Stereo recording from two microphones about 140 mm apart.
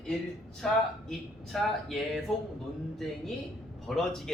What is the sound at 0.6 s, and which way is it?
A man's voice, 5° left (ahead or behind).